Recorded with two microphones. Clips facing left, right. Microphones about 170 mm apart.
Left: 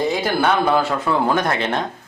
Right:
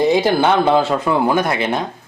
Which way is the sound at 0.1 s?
25° right (ahead or behind).